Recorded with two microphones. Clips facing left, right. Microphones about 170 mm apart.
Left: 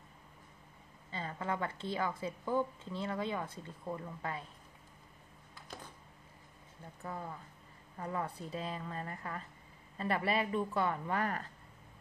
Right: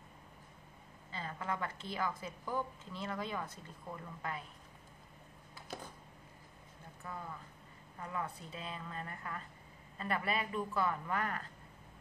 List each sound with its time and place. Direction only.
1.1 s a woman's voice: 30° left (ahead or behind)
8.0 s speech: 30° left (ahead or behind)